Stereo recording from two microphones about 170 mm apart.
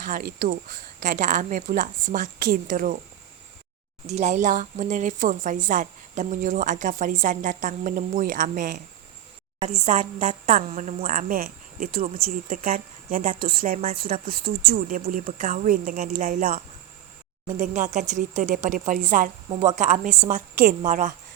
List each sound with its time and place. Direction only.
0.0 s speech: 55° right (ahead or behind)
4.0 s speech: 40° right (ahead or behind)